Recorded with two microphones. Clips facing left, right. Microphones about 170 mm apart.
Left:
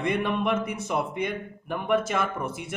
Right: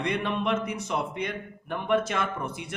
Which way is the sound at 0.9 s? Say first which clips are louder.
Left 4 dB; 5° left (ahead or behind).